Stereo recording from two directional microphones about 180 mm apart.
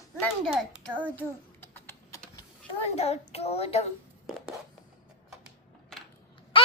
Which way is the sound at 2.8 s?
35° left (ahead or behind).